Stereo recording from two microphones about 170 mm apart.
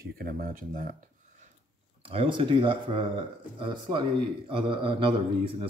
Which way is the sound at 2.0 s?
35° right (ahead or behind).